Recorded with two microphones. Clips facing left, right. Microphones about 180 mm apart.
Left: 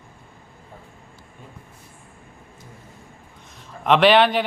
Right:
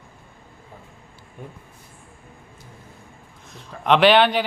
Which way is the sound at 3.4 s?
Centre (ahead or behind).